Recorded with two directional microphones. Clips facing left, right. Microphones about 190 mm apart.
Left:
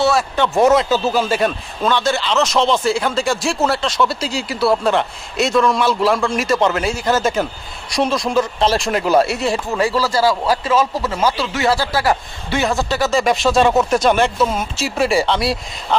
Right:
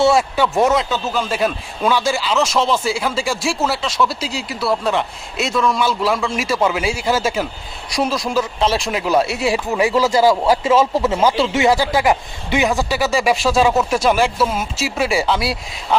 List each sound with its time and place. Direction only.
0.0 s speech: 25° right (ahead or behind)
0.3 s speech: 5° right (ahead or behind)